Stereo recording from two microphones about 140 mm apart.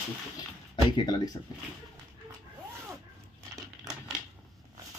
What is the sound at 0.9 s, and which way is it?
Speech, 30° left (ahead or behind).